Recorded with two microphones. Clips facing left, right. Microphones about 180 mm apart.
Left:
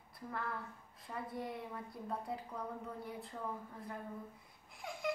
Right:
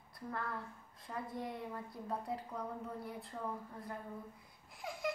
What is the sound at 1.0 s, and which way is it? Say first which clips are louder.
A woman's voice: even; centre (ahead or behind).